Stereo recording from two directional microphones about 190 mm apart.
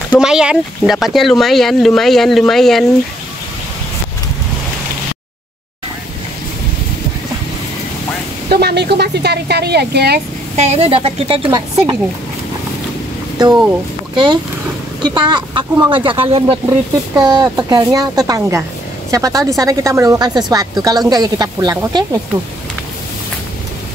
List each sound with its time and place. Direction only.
0.2 s speech: 5° right (ahead or behind)
8.5 s speech: 60° right (ahead or behind)
10.5 s speech: 35° right (ahead or behind)
15.0 s speech: 25° right (ahead or behind)
16.6 s speech: 15° right (ahead or behind)